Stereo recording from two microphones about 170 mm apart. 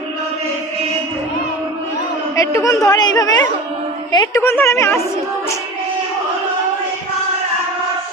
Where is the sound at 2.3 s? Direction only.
20° left (ahead or behind).